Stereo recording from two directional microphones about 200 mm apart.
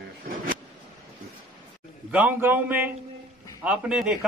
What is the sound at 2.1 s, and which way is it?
A man's voice, 10° right (ahead or behind).